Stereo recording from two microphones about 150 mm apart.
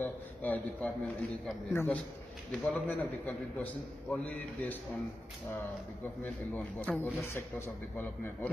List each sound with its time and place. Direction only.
0.0 s a sound: 10° left (ahead or behind)
1.7 s a man's voice: 15° left (ahead or behind)
6.2 s a man's voice: 10° left (ahead or behind)